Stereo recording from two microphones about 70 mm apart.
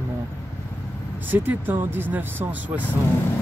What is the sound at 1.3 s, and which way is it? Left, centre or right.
Speech, right.